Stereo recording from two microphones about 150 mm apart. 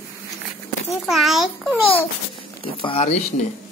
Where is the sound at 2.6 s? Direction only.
35° left (ahead or behind).